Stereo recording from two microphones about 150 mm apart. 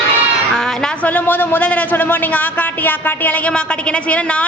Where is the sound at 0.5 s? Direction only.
5° left (ahead or behind).